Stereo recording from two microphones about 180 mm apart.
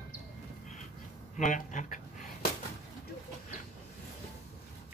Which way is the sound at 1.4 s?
45° left (ahead or behind).